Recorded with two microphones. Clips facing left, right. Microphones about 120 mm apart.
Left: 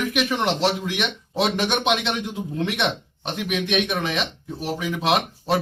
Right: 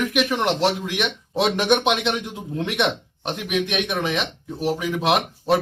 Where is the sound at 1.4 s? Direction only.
20° right (ahead or behind).